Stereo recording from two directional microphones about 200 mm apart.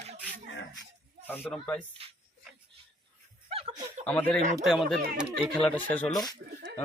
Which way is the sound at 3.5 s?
30° right (ahead or behind).